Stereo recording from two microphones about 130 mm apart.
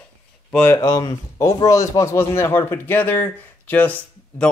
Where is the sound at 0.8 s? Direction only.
30° left (ahead or behind).